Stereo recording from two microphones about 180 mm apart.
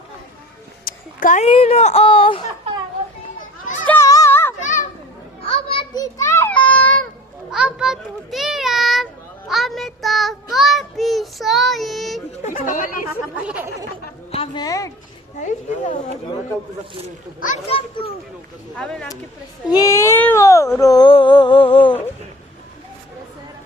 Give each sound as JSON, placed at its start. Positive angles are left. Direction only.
{"t": 0.9, "sound": "a sound", "side_deg": 50}
{"t": 1.5, "sound": "speech", "side_deg": 35}
{"t": 3.8, "sound": "children playing", "side_deg": 15}
{"t": 4.6, "sound": "children playing", "side_deg": 45}
{"t": 5.5, "sound": "children playing", "side_deg": 30}
{"t": 6.0, "sound": "children playing", "side_deg": 15}
{"t": 7.5, "sound": "a sound", "side_deg": -5}
{"t": 9.5, "sound": "child singing", "side_deg": 0}
{"t": 12.5, "sound": "speech", "side_deg": 45}
{"t": 14.3, "sound": "speech", "side_deg": 30}
{"t": 15.4, "sound": "speech", "side_deg": 45}
{"t": 17.7, "sound": "speech", "side_deg": 30}
{"t": 18.7, "sound": "speech", "side_deg": 5}
{"t": 19.7, "sound": "a sound", "side_deg": 15}